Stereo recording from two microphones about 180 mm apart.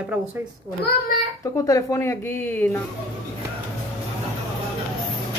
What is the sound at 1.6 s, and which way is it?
Speech, 20° left (ahead or behind).